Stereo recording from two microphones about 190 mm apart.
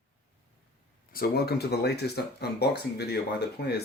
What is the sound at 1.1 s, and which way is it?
Speech, 55° left (ahead or behind).